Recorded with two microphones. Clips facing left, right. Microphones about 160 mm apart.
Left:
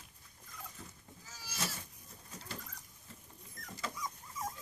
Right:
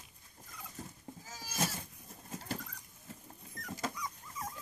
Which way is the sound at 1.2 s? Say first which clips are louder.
Right 5 dB; 45° right (ahead or behind).